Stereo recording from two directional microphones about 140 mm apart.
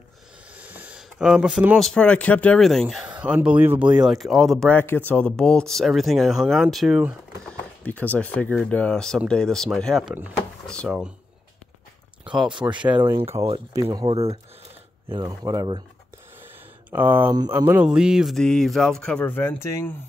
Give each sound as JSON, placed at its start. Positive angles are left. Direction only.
{"t": 0.6, "sound": "a sound", "side_deg": -10}
{"t": 1.8, "sound": "speech", "side_deg": 5}
{"t": 3.1, "sound": "speech", "side_deg": -10}
{"t": 4.7, "sound": "speech", "side_deg": 15}
{"t": 7.4, "sound": "speech", "side_deg": 10}
{"t": 10.1, "sound": "speech", "side_deg": -10}
{"t": 10.7, "sound": "speech", "side_deg": 5}
{"t": 12.6, "sound": "speech", "side_deg": -15}
{"t": 13.9, "sound": "speech", "side_deg": -40}
{"t": 15.2, "sound": "speech", "side_deg": -25}
{"t": 16.9, "sound": "speech", "side_deg": -15}